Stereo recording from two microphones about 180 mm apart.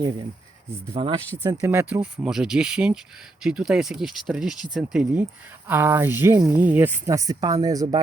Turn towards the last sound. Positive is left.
turn(degrees=-20)  # may be behind; listen again after turning